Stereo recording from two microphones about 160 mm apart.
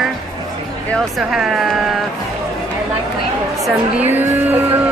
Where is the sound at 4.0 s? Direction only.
10° right (ahead or behind).